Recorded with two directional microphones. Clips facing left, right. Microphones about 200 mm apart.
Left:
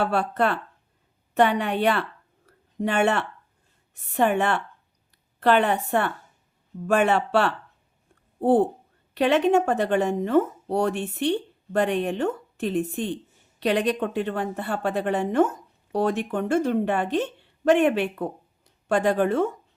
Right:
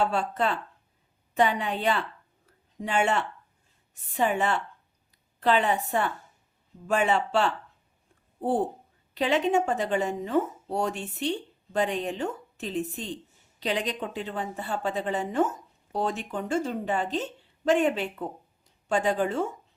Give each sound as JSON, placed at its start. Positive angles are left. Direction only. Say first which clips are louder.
{"t": 0.0, "sound": "a woman's voice", "louder": "left 3 dB", "side_deg": 65}
{"t": 2.5, "sound": "a sound", "louder": "left 4 dB", "side_deg": 65}
{"t": 4.1, "sound": "a woman's voice", "louder": "left 4 dB", "side_deg": 65}